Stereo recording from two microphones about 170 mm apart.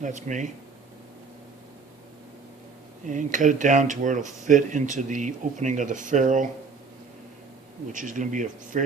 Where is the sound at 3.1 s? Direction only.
45° right (ahead or behind).